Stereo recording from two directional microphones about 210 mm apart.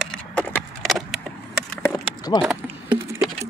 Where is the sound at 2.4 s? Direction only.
5° right (ahead or behind).